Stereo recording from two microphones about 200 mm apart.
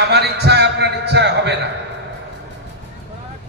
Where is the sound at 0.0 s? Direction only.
55° right (ahead or behind).